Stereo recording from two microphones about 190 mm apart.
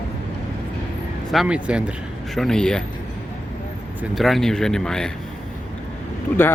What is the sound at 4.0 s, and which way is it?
Speech, centre (ahead or behind).